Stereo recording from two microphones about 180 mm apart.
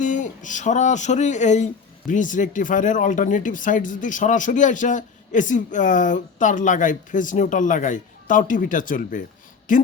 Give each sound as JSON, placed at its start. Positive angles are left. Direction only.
{"t": 0.0, "sound": "speech", "side_deg": 45}